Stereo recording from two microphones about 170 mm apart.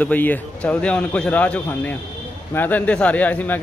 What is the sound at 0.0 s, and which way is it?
Speech, 10° left (ahead or behind).